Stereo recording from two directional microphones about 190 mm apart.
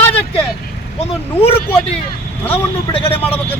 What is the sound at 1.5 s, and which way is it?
Speech, 30° left (ahead or behind).